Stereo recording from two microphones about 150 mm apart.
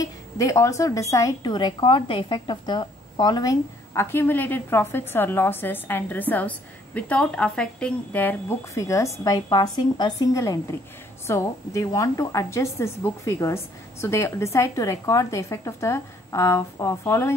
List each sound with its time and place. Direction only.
0.0 s a woman's voice: 20° left (ahead or behind)